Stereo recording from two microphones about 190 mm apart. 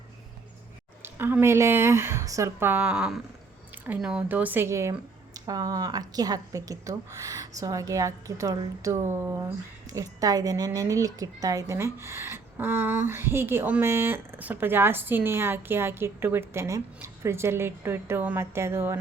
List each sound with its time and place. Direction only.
1.0 s speech: 10° right (ahead or behind)